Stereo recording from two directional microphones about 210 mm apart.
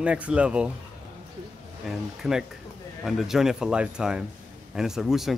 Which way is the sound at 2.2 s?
Centre (ahead or behind).